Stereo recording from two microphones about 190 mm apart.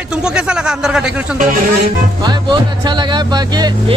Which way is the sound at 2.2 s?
25° right (ahead or behind).